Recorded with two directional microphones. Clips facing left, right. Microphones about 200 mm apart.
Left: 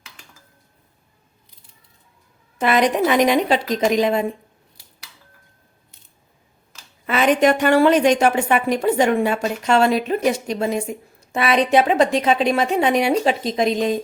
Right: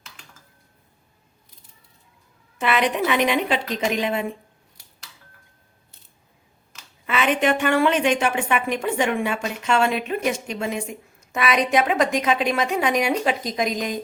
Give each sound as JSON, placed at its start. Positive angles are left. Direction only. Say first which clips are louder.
{"t": 2.6, "sound": "a woman's voice", "louder": "left 4 dB", "side_deg": 40}
{"t": 7.1, "sound": "a woman's voice", "louder": "left 5 dB", "side_deg": 40}